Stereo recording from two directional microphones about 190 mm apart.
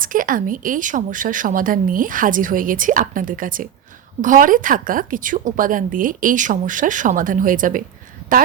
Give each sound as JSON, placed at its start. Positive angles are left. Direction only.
{"t": 0.0, "sound": "a woman's voice", "side_deg": -45}